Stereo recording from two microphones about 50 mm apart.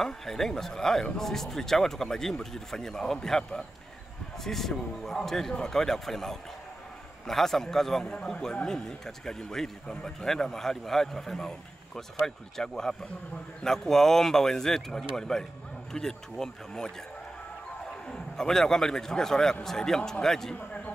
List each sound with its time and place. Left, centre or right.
0.0 s a man's voice: centre
18.0 s a man's voice: centre
20.5 s a man's voice: left